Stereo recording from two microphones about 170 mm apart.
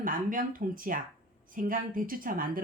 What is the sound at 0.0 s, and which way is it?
Speech, 55° right (ahead or behind).